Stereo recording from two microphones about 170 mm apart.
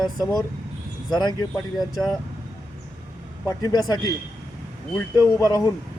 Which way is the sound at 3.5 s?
20° left (ahead or behind).